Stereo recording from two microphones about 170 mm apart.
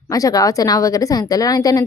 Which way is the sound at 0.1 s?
20° left (ahead or behind).